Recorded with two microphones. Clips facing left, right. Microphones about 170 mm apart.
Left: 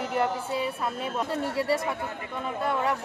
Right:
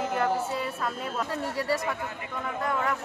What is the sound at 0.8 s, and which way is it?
A woman's voice, 25° left (ahead or behind).